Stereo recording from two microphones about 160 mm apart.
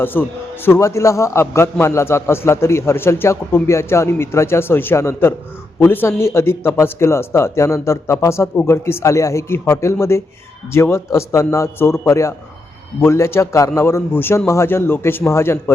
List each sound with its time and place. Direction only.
0.0 s speech: 15° left (ahead or behind)